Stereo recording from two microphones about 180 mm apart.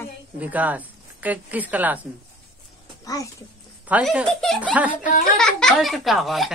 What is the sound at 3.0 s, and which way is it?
Speech, 20° left (ahead or behind).